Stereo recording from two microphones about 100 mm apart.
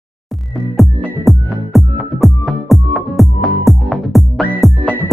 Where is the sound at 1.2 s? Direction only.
Centre (ahead or behind).